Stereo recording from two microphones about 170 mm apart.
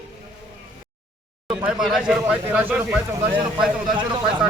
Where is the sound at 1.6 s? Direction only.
Centre (ahead or behind).